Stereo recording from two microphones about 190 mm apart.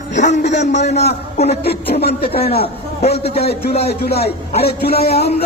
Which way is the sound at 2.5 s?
30° left (ahead or behind).